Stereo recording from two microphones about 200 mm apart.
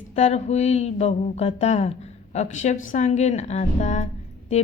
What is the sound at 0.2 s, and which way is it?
A woman's voice, 35° left (ahead or behind).